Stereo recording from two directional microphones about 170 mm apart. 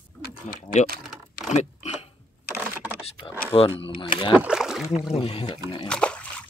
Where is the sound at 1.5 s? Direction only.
40° left (ahead or behind).